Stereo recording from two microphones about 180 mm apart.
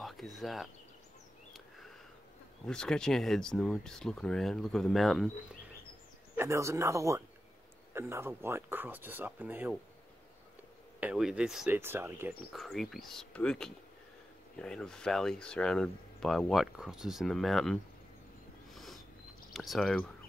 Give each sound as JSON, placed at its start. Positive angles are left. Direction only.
{"t": 0.0, "sound": "speech", "side_deg": 0}
{"t": 2.6, "sound": "speech", "side_deg": 5}
{"t": 6.3, "sound": "speech", "side_deg": -15}
{"t": 11.0, "sound": "speech", "side_deg": -5}
{"t": 12.5, "sound": "speech", "side_deg": 0}
{"t": 18.7, "sound": "a sound", "side_deg": 0}
{"t": 19.5, "sound": "speech", "side_deg": 0}